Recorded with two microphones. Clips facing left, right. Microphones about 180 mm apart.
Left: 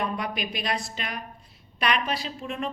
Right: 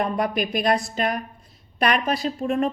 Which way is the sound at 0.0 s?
50° right (ahead or behind).